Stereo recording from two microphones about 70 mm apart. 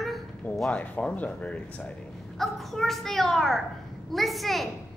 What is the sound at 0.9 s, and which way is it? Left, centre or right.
Speech, centre.